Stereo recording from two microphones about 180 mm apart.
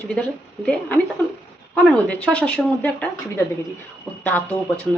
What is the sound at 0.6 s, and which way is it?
Speech, 5° left (ahead or behind).